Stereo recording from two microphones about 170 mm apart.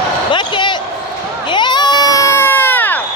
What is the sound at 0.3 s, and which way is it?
Basketball bounce, 30° left (ahead or behind).